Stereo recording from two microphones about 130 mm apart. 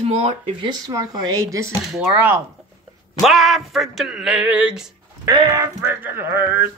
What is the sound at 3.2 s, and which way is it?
Speech, centre (ahead or behind).